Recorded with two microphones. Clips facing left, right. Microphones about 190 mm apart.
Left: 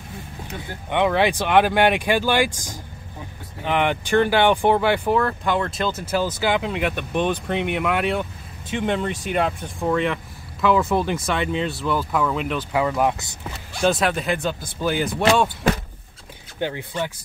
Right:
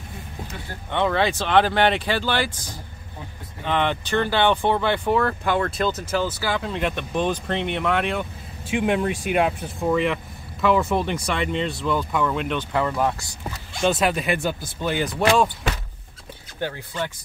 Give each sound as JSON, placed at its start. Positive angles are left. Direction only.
{"t": 0.8, "sound": "speech", "side_deg": 15}
{"t": 3.6, "sound": "speech", "side_deg": 15}
{"t": 6.4, "sound": "speech", "side_deg": 20}
{"t": 6.8, "sound": "speech", "side_deg": 5}
{"t": 8.6, "sound": "speech", "side_deg": -10}
{"t": 13.7, "sound": "speech", "side_deg": 0}
{"t": 14.8, "sound": "speech", "side_deg": 0}
{"t": 16.5, "sound": "speech", "side_deg": 15}